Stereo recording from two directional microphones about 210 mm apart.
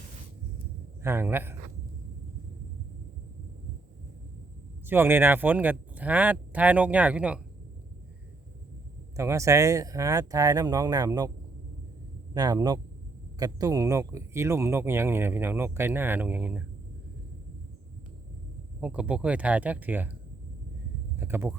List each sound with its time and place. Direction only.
1.0 s speech: 10° right (ahead or behind)
4.9 s speech: 10° right (ahead or behind)
9.1 s speech: 15° right (ahead or behind)
12.3 s speech: 20° right (ahead or behind)
18.8 s speech: 5° right (ahead or behind)
21.2 s speech: 10° right (ahead or behind)